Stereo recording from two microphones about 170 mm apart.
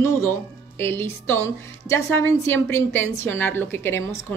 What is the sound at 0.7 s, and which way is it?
A woman's voice, 15° left (ahead or behind).